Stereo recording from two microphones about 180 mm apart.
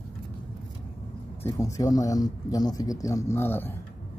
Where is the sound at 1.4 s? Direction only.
20° left (ahead or behind).